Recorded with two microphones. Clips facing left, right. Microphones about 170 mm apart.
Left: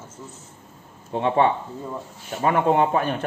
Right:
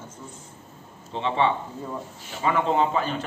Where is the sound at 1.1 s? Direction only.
55° left (ahead or behind).